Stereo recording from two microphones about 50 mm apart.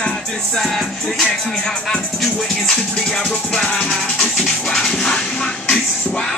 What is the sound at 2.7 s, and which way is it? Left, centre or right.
Music, centre.